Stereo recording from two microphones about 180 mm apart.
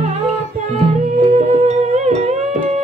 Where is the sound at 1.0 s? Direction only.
40° right (ahead or behind).